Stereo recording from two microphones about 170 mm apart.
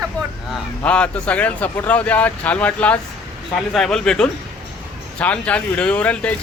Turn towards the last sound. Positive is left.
turn(degrees=10)  # may be behind; listen again after turning